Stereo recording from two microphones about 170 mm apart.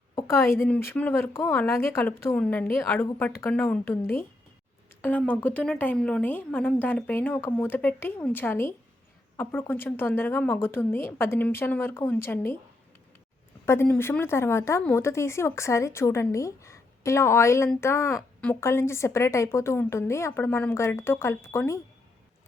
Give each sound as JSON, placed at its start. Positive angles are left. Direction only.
{"t": 0.2, "sound": "speech", "side_deg": 15}
{"t": 13.7, "sound": "speech", "side_deg": 10}